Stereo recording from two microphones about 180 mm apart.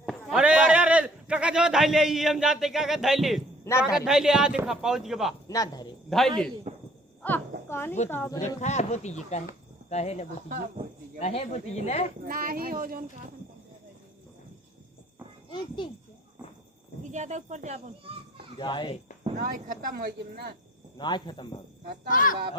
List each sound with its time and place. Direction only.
0.0 s a sound: centre (ahead or behind)
3.8 s a man's voice: 5° right (ahead or behind)
5.5 s cricket: 20° left (ahead or behind)
6.1 s a man's voice: centre (ahead or behind)
6.7 s a sound: 40° right (ahead or behind)
7.2 s a child's voice: 10° left (ahead or behind)
8.4 s speech: 40° left (ahead or behind)
12.2 s speech: 50° right (ahead or behind)
15.4 s a child's voice: 25° left (ahead or behind)
17.0 s speech: 40° right (ahead or behind)
18.5 s speech: 25° left (ahead or behind)
19.4 s speech: 50° right (ahead or behind)
21.0 s speech: 25° left (ahead or behind)
22.1 s speech: 50° left (ahead or behind)